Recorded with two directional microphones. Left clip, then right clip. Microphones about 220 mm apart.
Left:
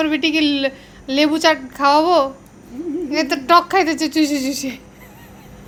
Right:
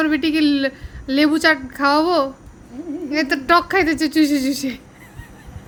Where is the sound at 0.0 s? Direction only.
20° right (ahead or behind).